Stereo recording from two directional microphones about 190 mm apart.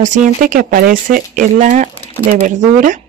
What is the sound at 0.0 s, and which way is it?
Speech, 40° right (ahead or behind).